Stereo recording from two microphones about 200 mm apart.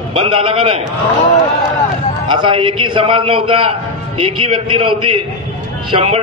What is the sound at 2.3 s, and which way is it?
A man's voice, 25° right (ahead or behind).